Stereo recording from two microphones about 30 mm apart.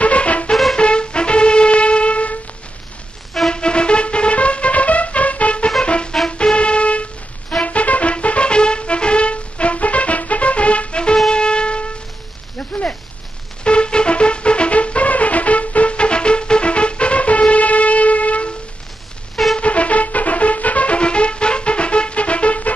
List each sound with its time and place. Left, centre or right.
0.0 s music: left
0.7 s music: left
3.4 s music: left
5.9 s music: left
11.2 s shofar: left
12.5 s a sound: left
13.7 s music: left
19.6 s music: left